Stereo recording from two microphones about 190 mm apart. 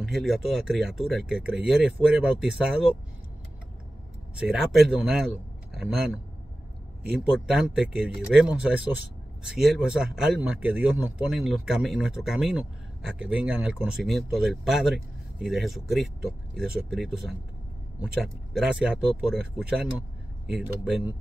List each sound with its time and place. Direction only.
0.0 s speech: centre (ahead or behind)
4.4 s speech: centre (ahead or behind)
7.2 s speech: 5° right (ahead or behind)